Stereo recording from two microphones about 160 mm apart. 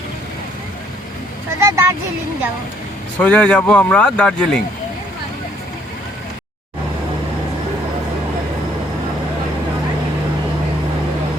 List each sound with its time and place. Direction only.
1.5 s speech: 15° right (ahead or behind)
3.2 s speech: 10° left (ahead or behind)